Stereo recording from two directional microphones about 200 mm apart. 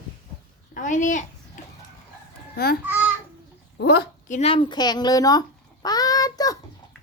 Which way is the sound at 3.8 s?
50° left (ahead or behind).